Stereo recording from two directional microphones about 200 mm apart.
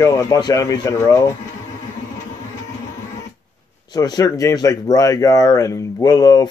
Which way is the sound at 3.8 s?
20° left (ahead or behind).